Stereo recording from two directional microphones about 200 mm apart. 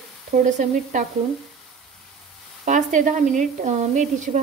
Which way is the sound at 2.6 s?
40° right (ahead or behind).